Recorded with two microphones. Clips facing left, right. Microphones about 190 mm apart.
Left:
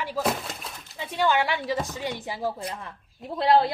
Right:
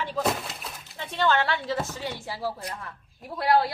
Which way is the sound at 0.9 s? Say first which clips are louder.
Left 1 dB; 10° left (ahead or behind).